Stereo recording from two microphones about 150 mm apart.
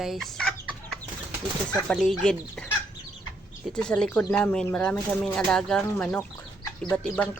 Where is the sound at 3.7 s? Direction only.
5° left (ahead or behind).